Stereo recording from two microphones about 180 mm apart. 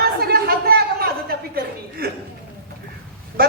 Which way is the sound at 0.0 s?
60° right (ahead or behind).